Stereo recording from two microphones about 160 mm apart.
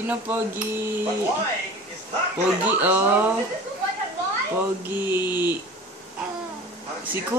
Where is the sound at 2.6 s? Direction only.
10° right (ahead or behind).